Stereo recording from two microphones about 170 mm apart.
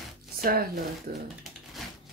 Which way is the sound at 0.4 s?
60° right (ahead or behind).